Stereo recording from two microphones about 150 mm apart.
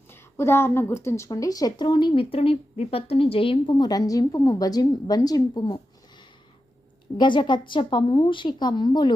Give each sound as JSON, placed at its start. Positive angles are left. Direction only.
{"t": 0.1, "sound": "a woman's voice", "side_deg": 15}